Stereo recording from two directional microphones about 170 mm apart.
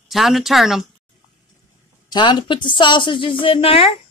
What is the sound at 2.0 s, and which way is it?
Speech, 25° left (ahead or behind).